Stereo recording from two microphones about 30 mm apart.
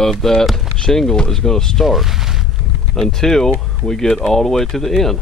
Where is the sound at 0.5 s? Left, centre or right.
Centre.